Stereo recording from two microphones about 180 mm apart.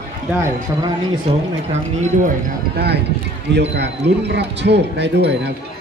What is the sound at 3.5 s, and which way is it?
Speech, 70° right (ahead or behind).